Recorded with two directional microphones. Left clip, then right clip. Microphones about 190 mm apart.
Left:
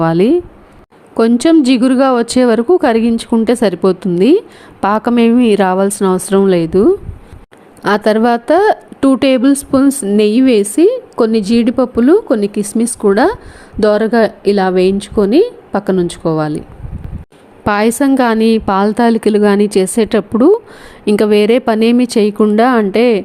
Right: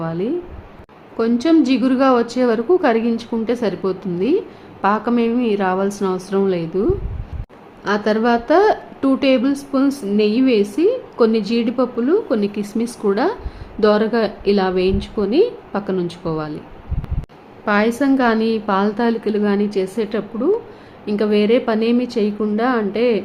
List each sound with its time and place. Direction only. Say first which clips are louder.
0.0 s a woman's voice: left 12 dB; 50° left (ahead or behind)
17.7 s a woman's voice: left 5 dB; 55° left (ahead or behind)